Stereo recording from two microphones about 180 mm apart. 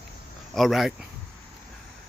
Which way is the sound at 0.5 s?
Centre (ahead or behind).